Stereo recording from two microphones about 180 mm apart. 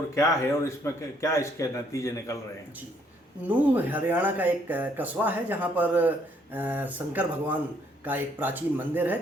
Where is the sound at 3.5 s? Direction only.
10° right (ahead or behind).